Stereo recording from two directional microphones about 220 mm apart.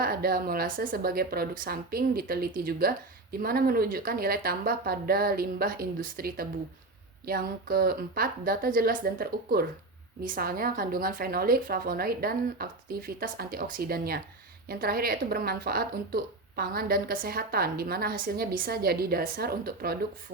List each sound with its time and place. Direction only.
0.0 s speech: 45° right (ahead or behind)